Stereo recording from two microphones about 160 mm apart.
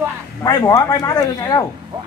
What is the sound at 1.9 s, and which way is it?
Speech, 25° right (ahead or behind).